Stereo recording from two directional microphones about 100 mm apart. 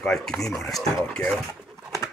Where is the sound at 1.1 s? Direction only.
10° left (ahead or behind).